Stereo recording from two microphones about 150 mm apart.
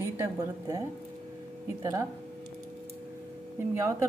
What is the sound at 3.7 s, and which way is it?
Speech, 20° right (ahead or behind).